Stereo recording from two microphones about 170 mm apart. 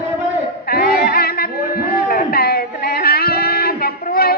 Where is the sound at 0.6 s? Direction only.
60° left (ahead or behind).